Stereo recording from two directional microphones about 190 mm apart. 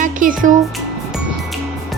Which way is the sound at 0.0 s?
45° right (ahead or behind).